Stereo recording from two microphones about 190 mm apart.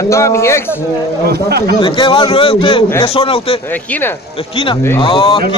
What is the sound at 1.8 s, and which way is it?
A man's voice, 25° left (ahead or behind).